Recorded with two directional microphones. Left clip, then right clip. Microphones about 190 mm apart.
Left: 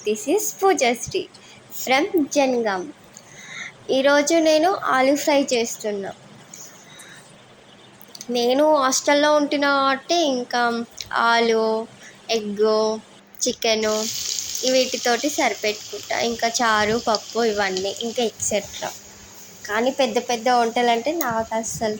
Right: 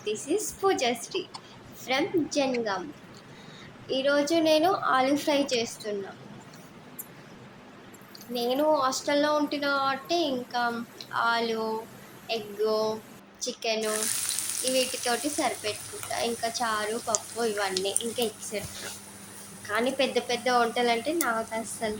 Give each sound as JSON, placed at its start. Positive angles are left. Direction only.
{"t": 0.0, "sound": "speech", "side_deg": 35}
{"t": 3.8, "sound": "speech", "side_deg": 40}
{"t": 4.4, "sound": "speech", "side_deg": 30}
{"t": 8.2, "sound": "speech", "side_deg": 40}
{"t": 19.6, "sound": "speech", "side_deg": 25}